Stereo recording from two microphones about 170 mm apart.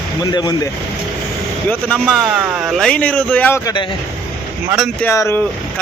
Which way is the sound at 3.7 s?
30° left (ahead or behind).